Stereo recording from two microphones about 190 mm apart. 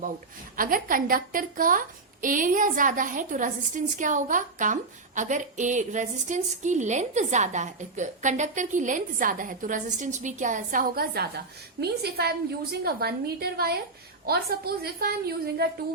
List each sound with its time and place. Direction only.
0.5 s a woman's voice: 45° right (ahead or behind)